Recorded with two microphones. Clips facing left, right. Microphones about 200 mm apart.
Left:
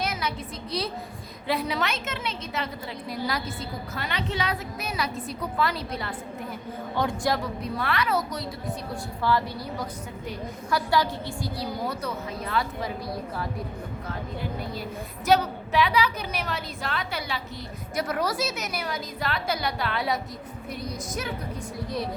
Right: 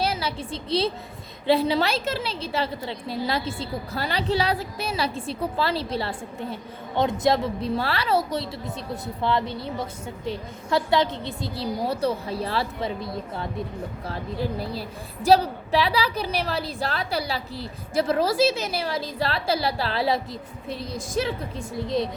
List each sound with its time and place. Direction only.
0.0 s a sound: 30° right (ahead or behind)
1.5 s a woman's voice: 30° right (ahead or behind)
14.6 s a woman's voice: 35° right (ahead or behind)